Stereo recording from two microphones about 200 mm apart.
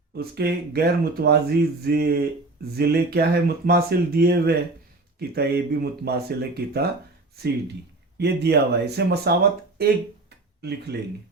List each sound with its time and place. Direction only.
0.1 s speech: 50° right (ahead or behind)
8.2 s speech: 55° right (ahead or behind)